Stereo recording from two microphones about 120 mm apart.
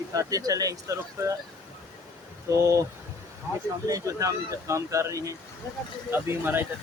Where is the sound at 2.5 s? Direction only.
25° right (ahead or behind).